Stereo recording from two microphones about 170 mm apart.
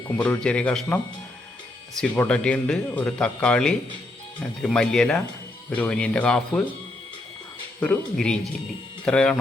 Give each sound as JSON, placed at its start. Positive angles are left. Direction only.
{"t": 0.2, "sound": "speech", "side_deg": 5}
{"t": 2.0, "sound": "speech", "side_deg": 5}
{"t": 7.8, "sound": "speech", "side_deg": 5}